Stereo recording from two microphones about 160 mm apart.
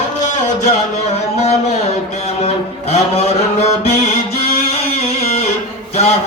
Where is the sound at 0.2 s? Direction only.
50° left (ahead or behind).